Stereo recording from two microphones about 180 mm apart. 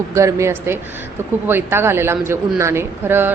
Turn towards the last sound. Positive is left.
turn(degrees=-10)  # may be behind; listen again after turning